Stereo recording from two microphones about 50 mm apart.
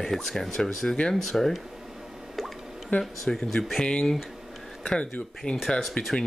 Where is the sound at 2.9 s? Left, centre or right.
Left.